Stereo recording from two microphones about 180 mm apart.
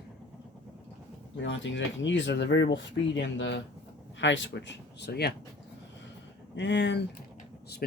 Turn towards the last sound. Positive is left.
turn(degrees=75)  # may be behind; listen again after turning